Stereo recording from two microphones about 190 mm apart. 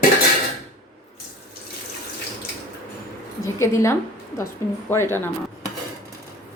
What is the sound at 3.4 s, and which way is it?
A woman's voice, 15° left (ahead or behind).